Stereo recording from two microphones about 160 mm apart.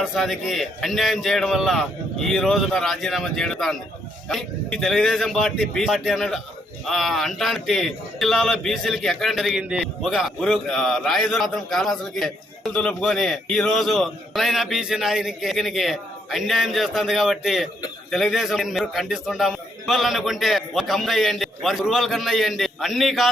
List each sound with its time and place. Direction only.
0.0 s a man's voice: centre (ahead or behind)